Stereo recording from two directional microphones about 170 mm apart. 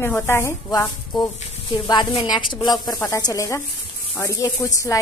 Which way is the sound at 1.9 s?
25° left (ahead or behind).